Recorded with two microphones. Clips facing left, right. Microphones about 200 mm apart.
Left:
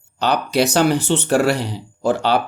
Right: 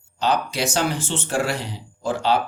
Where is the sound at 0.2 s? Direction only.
65° left (ahead or behind).